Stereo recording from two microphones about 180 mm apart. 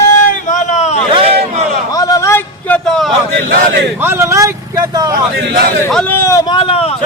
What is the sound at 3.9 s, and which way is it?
Speech, 15° right (ahead or behind).